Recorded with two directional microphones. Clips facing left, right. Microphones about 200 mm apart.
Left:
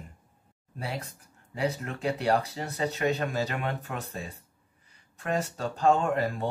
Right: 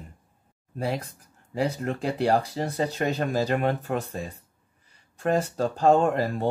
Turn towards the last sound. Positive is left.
turn(degrees=-35)  # may be behind; listen again after turning